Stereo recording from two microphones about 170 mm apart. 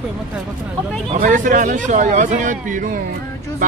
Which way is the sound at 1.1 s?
50° right (ahead or behind).